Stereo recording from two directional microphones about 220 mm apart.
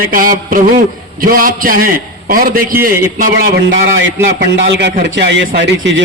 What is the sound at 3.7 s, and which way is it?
A man's voice, 60° right (ahead or behind).